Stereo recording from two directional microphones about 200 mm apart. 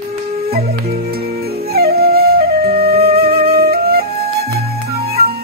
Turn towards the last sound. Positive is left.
turn(degrees=-50)  # may be behind; listen again after turning